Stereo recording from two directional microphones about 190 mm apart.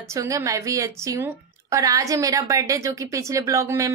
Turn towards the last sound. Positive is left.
turn(degrees=-15)  # may be behind; listen again after turning